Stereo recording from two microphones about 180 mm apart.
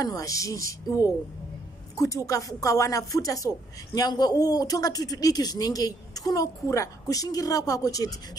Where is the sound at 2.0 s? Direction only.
20° left (ahead or behind).